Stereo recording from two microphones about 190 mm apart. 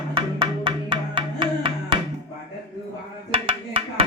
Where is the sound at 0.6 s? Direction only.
25° right (ahead or behind).